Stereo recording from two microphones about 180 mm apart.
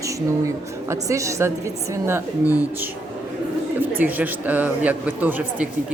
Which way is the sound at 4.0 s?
10° right (ahead or behind).